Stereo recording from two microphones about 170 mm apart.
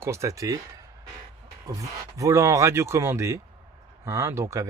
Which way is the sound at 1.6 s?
20° right (ahead or behind).